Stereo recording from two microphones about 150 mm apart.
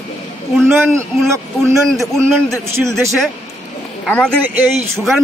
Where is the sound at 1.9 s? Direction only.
5° left (ahead or behind).